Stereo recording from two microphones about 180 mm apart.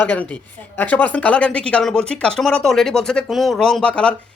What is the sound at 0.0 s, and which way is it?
Speech, 10° left (ahead or behind).